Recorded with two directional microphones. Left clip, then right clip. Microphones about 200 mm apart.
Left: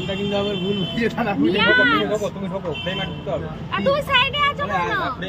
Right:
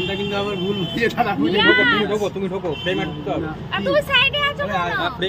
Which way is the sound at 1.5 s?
5° left (ahead or behind).